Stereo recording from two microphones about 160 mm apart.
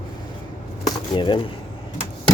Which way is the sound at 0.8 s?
30° left (ahead or behind).